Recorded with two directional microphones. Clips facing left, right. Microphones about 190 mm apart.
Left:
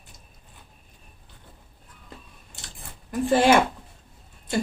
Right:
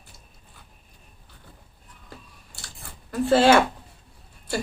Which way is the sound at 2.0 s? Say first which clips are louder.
Even; 20° left (ahead or behind).